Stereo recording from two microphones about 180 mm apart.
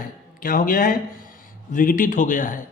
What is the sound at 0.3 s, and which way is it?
Speech, 50° left (ahead or behind).